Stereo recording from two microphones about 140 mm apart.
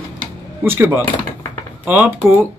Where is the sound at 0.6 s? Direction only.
15° right (ahead or behind).